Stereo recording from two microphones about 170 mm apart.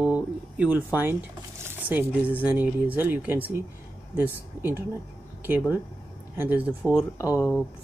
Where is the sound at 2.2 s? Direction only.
10° right (ahead or behind).